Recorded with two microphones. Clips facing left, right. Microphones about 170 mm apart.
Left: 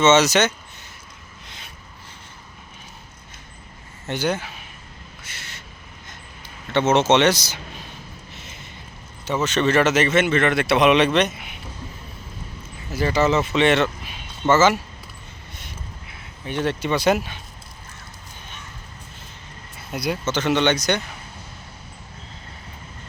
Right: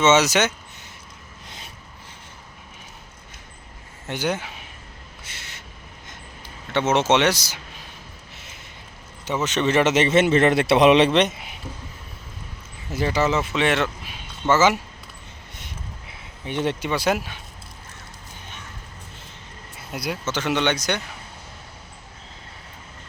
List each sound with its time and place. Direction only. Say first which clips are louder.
0.0 s speech: left 2 dB; 10° right (ahead or behind)
1.5 s a sound: right 3 dB; 40° right (ahead or behind)
4.0 s speech: left 2 dB; 15° right (ahead or behind)
5.2 s a sound: even; 20° right (ahead or behind)
6.7 s speech: left 2 dB; 10° right (ahead or behind)
9.2 s a man's voice: left 2 dB; 20° right (ahead or behind)
12.9 s speech: left 2 dB; 15° right (ahead or behind)
16.5 s a man's voice: left 1 dB; 20° right (ahead or behind)
16.9 s speech: left 3 dB; 5° right (ahead or behind)
19.9 s speech: left 3 dB; 5° right (ahead or behind)